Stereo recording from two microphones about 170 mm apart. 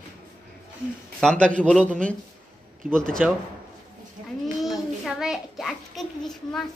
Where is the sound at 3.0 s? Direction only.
5° left (ahead or behind).